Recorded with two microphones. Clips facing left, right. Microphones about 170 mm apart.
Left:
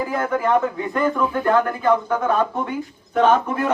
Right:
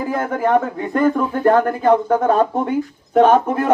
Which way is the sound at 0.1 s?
35° right (ahead or behind).